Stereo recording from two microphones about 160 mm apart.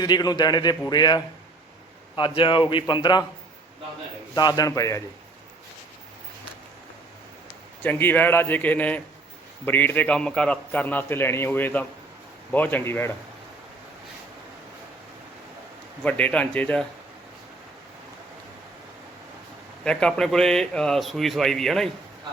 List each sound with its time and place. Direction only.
0.0 s a man's voice: 25° left (ahead or behind)
4.4 s a man's voice: 25° left (ahead or behind)
7.8 s a man's voice: 10° left (ahead or behind)
16.0 s a man's voice: 10° left (ahead or behind)
19.8 s a man's voice: 5° left (ahead or behind)